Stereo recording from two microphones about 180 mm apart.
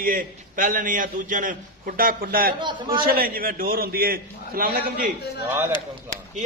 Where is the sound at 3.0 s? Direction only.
55° right (ahead or behind).